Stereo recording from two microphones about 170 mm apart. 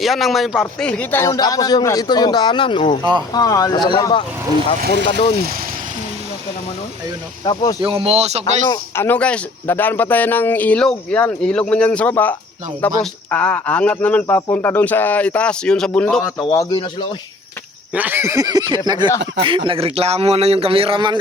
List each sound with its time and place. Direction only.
0.0 s speech: centre (ahead or behind); by 3.0 s 35° left (ahead or behind)
3.3 s speech: 20° left (ahead or behind)
5.4 s speech: 60° right (ahead or behind)
7.4 s speech: 25° left (ahead or behind)
7.8 s a man's voice: 35° right (ahead or behind)
8.7 s speech: 10° left (ahead or behind)
16.4 s speech: 20° left (ahead or behind)
17.9 s a sound: 10° right (ahead or behind)
19.4 s a man's voice: 30° right (ahead or behind)